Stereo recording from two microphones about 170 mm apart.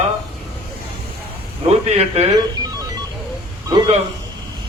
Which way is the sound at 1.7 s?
40° right (ahead or behind).